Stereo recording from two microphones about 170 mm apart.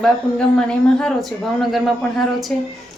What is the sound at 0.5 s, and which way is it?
A woman's voice, 5° left (ahead or behind).